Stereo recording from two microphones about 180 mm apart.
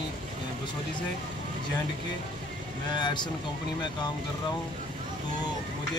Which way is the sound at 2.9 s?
25° left (ahead or behind).